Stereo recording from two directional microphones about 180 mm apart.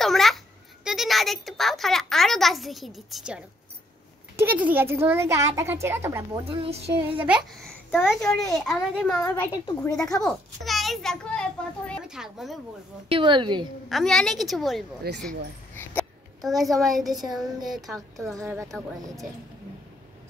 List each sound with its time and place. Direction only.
0.0 s a sound: centre (ahead or behind)
4.6 s a child's voice: 10° right (ahead or behind)
6.4 s a woman's voice: 30° right (ahead or behind)
7.2 s a child's voice: centre (ahead or behind)
9.2 s a woman's voice: 20° left (ahead or behind)
10.2 s a child's voice: centre (ahead or behind)
13.1 s a woman's voice: 25° right (ahead or behind)
13.8 s a child's voice: centre (ahead or behind)
18.4 s a child's voice: 15° right (ahead or behind)